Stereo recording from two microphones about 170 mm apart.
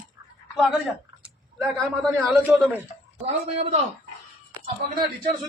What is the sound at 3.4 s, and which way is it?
Speech, 35° right (ahead or behind).